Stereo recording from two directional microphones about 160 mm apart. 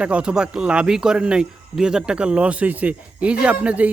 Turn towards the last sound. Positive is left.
turn(degrees=-10)  # may be behind; listen again after turning